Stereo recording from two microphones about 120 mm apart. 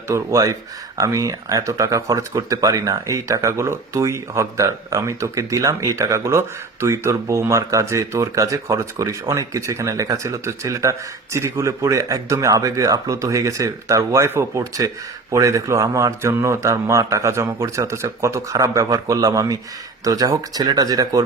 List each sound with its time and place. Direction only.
0.1 s speech: 25° right (ahead or behind)